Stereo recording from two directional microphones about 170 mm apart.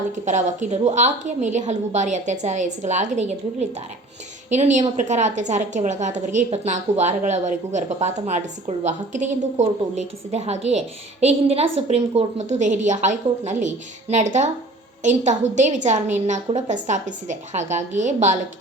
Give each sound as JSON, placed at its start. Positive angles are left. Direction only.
{"t": 0.3, "sound": "a woman's voice", "side_deg": -45}